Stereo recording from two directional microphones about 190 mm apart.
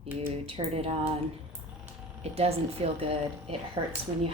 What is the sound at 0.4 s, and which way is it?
Speech, 30° right (ahead or behind).